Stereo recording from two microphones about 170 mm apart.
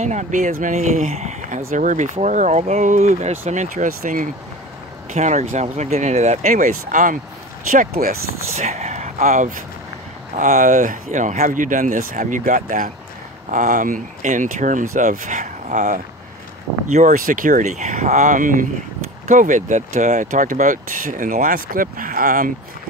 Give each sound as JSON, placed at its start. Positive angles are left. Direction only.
{"t": 0.0, "sound": "speech", "side_deg": -45}
{"t": 8.5, "sound": "speech", "side_deg": -40}